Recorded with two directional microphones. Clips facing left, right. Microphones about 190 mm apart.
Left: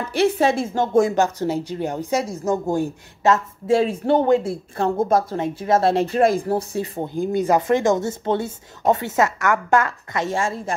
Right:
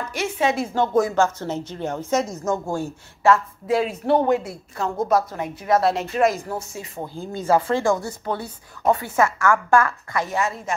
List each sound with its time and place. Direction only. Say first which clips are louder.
0.1 s speech: left 6 dB; 35° left (ahead or behind)
7.2 s speech: left 2 dB; 15° left (ahead or behind)